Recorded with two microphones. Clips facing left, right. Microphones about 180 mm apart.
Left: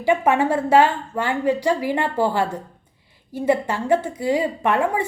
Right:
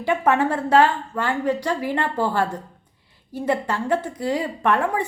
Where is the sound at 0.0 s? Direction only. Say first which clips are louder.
Left 2 dB; 15° left (ahead or behind).